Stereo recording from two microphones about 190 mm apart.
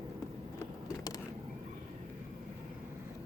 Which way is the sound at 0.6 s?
20° left (ahead or behind).